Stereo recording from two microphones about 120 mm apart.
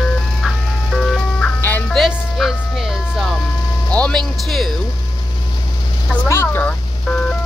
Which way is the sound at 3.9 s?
5° left (ahead or behind).